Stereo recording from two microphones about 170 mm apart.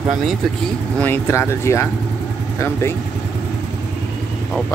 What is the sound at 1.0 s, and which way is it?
Speech, 15° left (ahead or behind).